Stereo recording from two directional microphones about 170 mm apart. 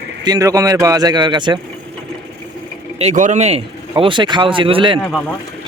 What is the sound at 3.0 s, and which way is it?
A man's voice, 45° right (ahead or behind).